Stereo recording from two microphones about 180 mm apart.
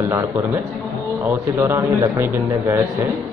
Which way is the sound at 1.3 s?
15° right (ahead or behind).